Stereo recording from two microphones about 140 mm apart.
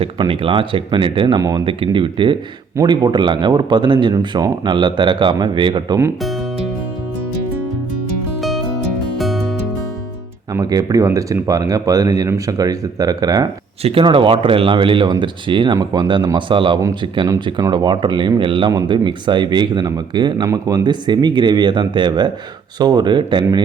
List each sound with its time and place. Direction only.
0.0 s speech: 40° right (ahead or behind)
1.6 s speech: 35° right (ahead or behind)
8.4 s music: centre (ahead or behind)
10.5 s speech: 25° right (ahead or behind)
13.8 s speech: 40° right (ahead or behind)